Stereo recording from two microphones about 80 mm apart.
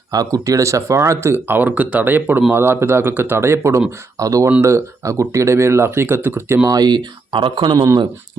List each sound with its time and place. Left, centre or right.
0.1 s speech: right
6.7 s speech: right